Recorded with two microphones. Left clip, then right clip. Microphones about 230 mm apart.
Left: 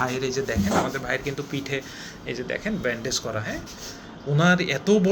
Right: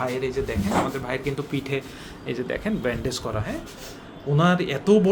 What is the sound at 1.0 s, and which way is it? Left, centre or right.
Speech, right.